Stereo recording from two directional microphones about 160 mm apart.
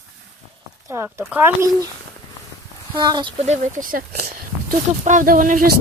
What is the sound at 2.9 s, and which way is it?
Speech, 25° right (ahead or behind).